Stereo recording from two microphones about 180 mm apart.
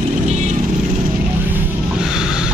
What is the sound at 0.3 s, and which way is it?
Vehicle, 40° right (ahead or behind).